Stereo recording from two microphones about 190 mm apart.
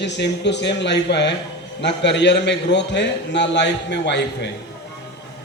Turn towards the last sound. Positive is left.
turn(degrees=65)  # may be behind; listen again after turning